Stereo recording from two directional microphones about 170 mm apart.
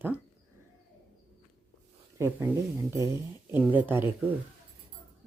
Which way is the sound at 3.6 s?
10° right (ahead or behind).